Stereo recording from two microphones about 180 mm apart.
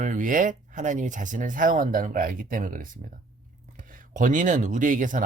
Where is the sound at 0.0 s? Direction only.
45° right (ahead or behind).